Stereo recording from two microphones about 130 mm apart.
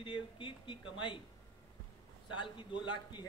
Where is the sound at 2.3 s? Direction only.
40° left (ahead or behind).